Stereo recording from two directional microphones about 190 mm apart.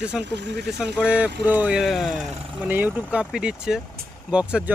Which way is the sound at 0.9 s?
5° right (ahead or behind).